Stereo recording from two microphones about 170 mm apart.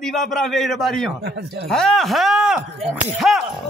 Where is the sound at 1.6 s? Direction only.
5° left (ahead or behind).